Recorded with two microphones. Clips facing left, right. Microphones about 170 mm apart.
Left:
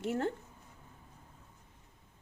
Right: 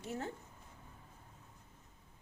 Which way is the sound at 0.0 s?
75° left (ahead or behind).